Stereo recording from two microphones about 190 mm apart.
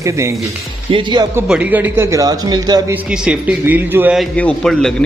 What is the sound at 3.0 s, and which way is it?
A man's voice, 5° right (ahead or behind).